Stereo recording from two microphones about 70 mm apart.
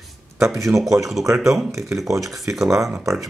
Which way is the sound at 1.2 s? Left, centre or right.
Right.